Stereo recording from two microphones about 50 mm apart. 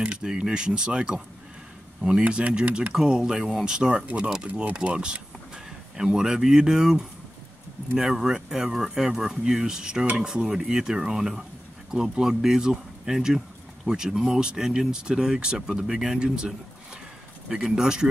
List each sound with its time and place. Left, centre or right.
0.2 s speech: centre